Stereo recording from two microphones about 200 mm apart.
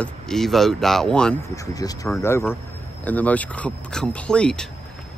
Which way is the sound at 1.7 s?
15° left (ahead or behind).